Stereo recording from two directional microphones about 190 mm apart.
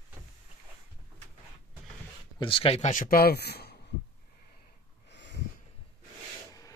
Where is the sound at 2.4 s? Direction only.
30° left (ahead or behind); by 3.7 s 55° left (ahead or behind).